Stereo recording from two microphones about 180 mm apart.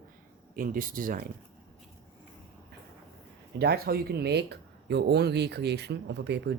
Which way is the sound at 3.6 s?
60° right (ahead or behind).